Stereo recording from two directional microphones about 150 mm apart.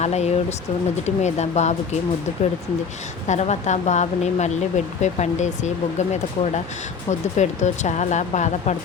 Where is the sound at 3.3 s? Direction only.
50° left (ahead or behind).